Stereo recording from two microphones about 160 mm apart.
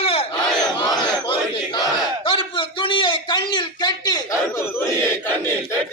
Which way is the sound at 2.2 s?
30° left (ahead or behind).